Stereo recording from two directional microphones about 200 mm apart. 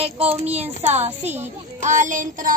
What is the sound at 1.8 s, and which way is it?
Speech, 40° right (ahead or behind).